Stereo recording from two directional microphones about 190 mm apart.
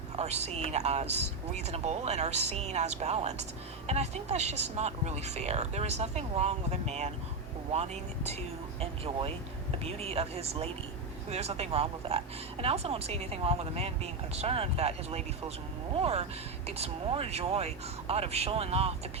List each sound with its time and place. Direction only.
0.2 s a woman's voice: 35° right (ahead or behind)